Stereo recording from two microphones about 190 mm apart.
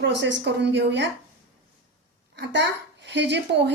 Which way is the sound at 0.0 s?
70° right (ahead or behind).